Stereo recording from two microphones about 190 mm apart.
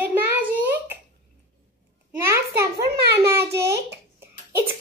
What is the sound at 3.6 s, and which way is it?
Speech, 60° right (ahead or behind).